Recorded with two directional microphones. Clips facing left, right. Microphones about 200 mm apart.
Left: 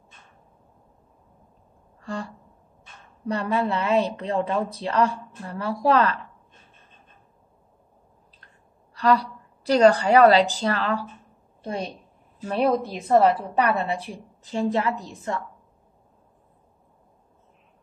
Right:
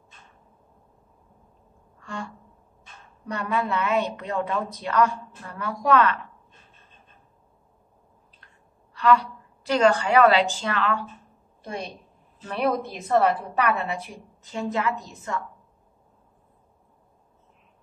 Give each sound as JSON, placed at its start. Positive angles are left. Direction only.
{"t": 2.0, "sound": "a sound", "side_deg": 35}
{"t": 3.3, "sound": "a woman's voice", "side_deg": 30}
{"t": 8.9, "sound": "a woman's voice", "side_deg": 35}
{"t": 12.4, "sound": "a woman's voice", "side_deg": 30}